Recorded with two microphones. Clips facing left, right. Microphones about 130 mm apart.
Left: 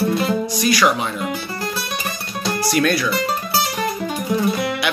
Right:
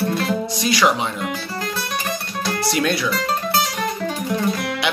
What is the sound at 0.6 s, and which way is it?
Speech, 25° right (ahead or behind).